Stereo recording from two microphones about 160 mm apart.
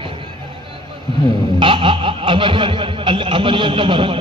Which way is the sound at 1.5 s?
30° right (ahead or behind).